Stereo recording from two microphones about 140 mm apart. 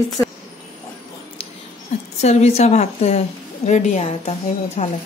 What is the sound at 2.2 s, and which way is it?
A woman's voice, 50° left (ahead or behind).